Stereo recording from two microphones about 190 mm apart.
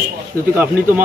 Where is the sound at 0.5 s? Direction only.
10° right (ahead or behind).